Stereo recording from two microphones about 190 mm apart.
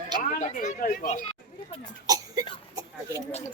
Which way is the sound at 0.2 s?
40° left (ahead or behind).